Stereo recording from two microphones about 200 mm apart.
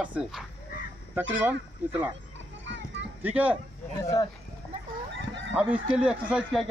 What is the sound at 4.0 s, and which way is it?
Speech, 15° left (ahead or behind).